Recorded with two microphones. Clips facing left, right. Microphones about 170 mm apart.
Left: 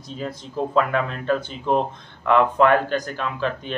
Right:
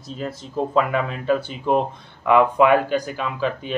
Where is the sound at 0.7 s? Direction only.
5° right (ahead or behind).